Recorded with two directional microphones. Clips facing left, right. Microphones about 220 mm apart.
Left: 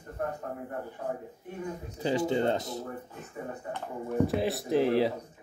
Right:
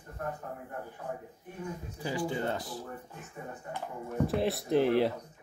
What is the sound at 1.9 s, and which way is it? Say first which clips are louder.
Speech: left 6 dB; 20° left (ahead or behind).